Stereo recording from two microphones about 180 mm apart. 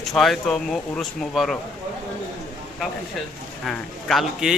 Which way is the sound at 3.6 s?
Centre (ahead or behind).